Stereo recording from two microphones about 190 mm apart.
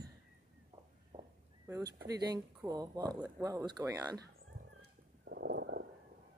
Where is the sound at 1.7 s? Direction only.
20° right (ahead or behind).